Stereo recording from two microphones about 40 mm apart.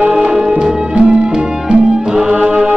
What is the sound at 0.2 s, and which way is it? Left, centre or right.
Music, centre.